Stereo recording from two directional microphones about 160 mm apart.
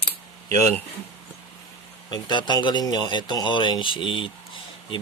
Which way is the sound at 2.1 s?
25° left (ahead or behind).